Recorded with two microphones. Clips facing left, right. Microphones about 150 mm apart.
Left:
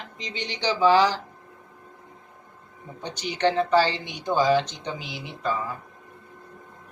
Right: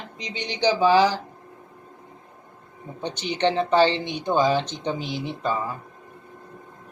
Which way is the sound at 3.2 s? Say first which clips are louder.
Even; 25° right (ahead or behind).